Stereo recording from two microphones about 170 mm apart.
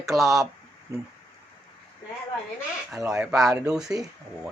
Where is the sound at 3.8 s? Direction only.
20° right (ahead or behind).